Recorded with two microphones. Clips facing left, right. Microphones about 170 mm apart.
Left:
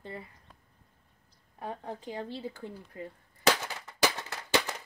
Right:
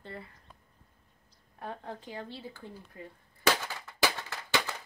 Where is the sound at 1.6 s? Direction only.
10° left (ahead or behind).